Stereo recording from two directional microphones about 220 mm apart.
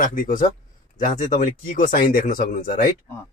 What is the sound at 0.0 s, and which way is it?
Speech, 35° left (ahead or behind).